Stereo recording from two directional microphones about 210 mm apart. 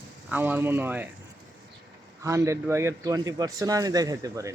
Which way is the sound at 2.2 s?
15° right (ahead or behind).